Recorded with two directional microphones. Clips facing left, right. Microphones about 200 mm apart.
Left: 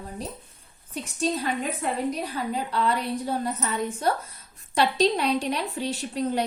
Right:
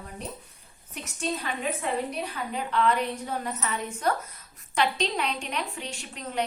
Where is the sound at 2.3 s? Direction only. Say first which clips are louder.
Left 2 dB; 35° left (ahead or behind).